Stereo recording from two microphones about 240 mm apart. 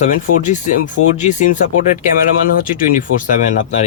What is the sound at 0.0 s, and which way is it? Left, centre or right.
Speech, left.